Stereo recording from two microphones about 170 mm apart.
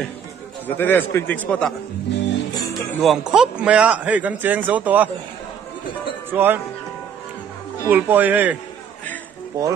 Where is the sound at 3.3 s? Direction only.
5° right (ahead or behind).